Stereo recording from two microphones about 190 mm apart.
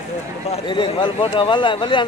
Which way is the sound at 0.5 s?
25° left (ahead or behind).